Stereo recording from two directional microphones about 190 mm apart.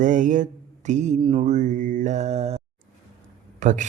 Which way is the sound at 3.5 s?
40° right (ahead or behind).